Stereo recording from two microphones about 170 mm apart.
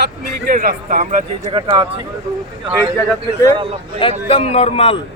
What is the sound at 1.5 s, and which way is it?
Speech, 30° right (ahead or behind).